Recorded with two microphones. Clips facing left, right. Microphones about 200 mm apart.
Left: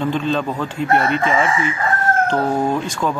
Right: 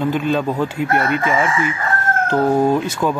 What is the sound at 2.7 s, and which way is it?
Speech, 10° right (ahead or behind).